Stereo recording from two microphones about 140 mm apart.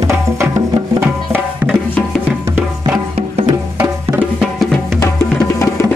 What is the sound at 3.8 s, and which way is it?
Music, 15° right (ahead or behind).